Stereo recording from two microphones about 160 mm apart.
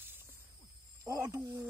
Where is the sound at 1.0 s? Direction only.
20° right (ahead or behind).